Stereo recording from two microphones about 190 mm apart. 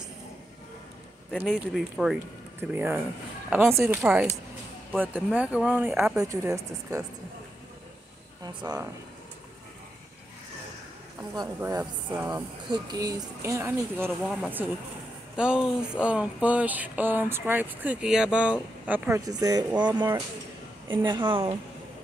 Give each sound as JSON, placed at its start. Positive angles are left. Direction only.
{"t": 1.4, "sound": "speech", "side_deg": -5}
{"t": 6.2, "sound": "speech", "side_deg": -15}
{"t": 8.6, "sound": "a woman's voice", "side_deg": -20}
{"t": 11.3, "sound": "speech", "side_deg": -20}
{"t": 19.7, "sound": "speech", "side_deg": -5}
{"t": 20.9, "sound": "a woman's voice", "side_deg": -25}